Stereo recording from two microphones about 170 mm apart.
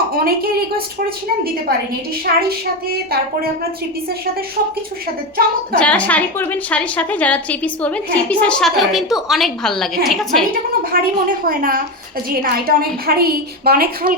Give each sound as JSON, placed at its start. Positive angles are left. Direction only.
{"t": 0.1, "sound": "a woman's voice", "side_deg": -60}
{"t": 2.2, "sound": "a woman's voice", "side_deg": -65}
{"t": 5.7, "sound": "a woman's voice", "side_deg": 5}
{"t": 10.9, "sound": "a woman's voice", "side_deg": -55}